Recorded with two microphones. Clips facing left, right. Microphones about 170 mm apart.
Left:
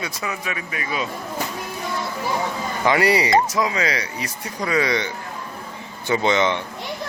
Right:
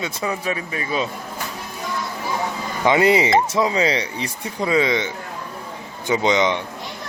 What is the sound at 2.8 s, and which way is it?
Speech, 20° right (ahead or behind).